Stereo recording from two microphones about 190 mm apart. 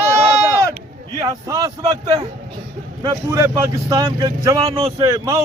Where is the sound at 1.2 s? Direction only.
20° right (ahead or behind).